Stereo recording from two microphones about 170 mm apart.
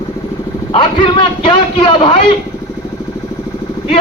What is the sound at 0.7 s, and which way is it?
A man's voice, 30° left (ahead or behind).